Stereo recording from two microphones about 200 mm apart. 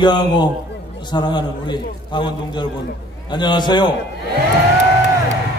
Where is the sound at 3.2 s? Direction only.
20° left (ahead or behind).